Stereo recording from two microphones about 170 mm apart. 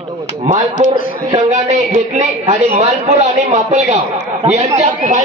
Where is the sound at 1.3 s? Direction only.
45° right (ahead or behind).